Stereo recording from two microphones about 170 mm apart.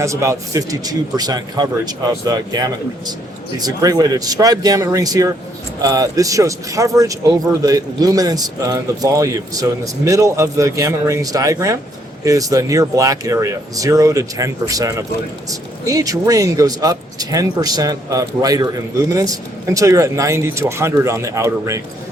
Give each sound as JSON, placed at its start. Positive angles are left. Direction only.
{"t": 0.0, "sound": "a man's voice", "side_deg": -15}